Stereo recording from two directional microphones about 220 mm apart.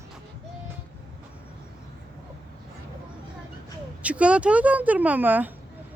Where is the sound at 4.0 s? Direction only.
5° right (ahead or behind).